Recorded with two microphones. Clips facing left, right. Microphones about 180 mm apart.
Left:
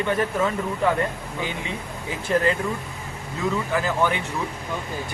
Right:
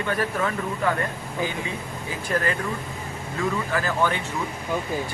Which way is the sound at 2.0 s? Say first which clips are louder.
Left 4 dB; 20° left (ahead or behind).